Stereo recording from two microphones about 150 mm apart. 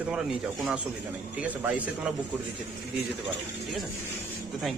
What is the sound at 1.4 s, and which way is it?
Speech, 10° right (ahead or behind).